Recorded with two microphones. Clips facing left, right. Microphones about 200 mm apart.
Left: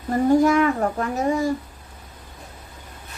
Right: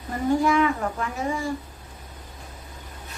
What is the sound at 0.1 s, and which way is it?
A woman's voice, 45° left (ahead or behind).